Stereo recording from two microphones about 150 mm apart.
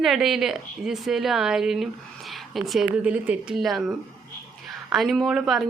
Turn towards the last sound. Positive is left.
turn(degrees=-5)  # may be behind; listen again after turning